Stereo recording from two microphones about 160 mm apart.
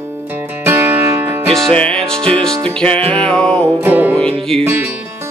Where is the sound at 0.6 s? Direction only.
15° right (ahead or behind).